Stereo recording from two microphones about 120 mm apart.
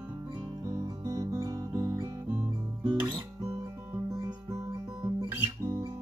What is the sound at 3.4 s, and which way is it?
Guitar, 25° right (ahead or behind).